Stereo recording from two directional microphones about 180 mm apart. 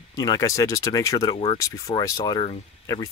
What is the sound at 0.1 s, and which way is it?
Speech, 20° left (ahead or behind).